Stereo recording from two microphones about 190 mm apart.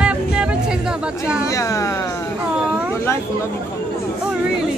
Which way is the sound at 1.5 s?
15° left (ahead or behind).